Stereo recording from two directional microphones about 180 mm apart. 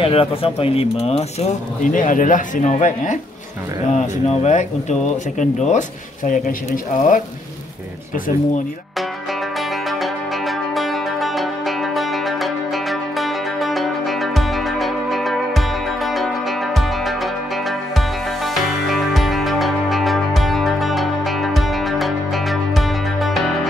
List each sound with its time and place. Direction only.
0.0 s speech: 30° left (ahead or behind); by 7.2 s 45° left (ahead or behind)
9.6 s music: centre (ahead or behind)